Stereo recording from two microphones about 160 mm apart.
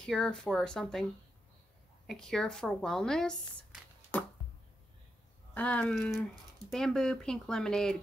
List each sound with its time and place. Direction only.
0.0 s a woman's voice: 5° left (ahead or behind)
2.0 s a woman's voice: 5° left (ahead or behind)
5.5 s a woman's voice: 10° left (ahead or behind)